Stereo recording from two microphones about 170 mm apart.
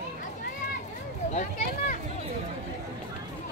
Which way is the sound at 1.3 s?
45° left (ahead or behind).